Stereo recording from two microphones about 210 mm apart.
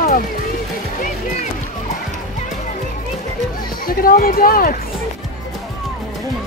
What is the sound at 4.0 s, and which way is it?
Speech, 45° left (ahead or behind).